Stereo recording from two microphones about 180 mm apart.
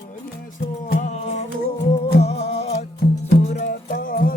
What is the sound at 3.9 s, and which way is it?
Music, 50° left (ahead or behind).